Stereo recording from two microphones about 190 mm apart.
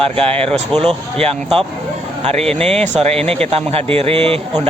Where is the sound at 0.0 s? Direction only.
30° right (ahead or behind).